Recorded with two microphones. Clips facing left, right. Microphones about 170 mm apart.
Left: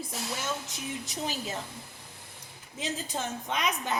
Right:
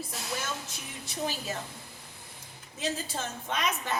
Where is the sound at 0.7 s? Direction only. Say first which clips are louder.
Left 6 dB; 20° left (ahead or behind).